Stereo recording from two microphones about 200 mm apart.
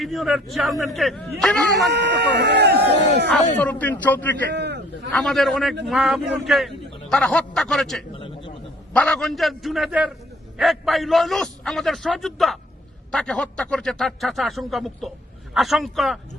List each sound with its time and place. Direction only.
0.0 s a man's voice: centre (ahead or behind)
1.8 s speech: 60° right (ahead or behind)
3.6 s a man's voice: 5° left (ahead or behind)
4.5 s a sound: 60° right (ahead or behind)
5.1 s a man's voice: centre (ahead or behind)
8.1 s a sound: 25° left (ahead or behind)
8.9 s a man's voice: 5° left (ahead or behind)